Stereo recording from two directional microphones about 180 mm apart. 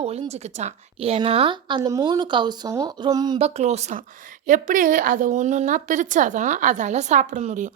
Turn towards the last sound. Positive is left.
turn(degrees=-45)  # may be behind; listen again after turning